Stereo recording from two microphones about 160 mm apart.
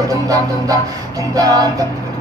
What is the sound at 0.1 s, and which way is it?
Music, 20° right (ahead or behind).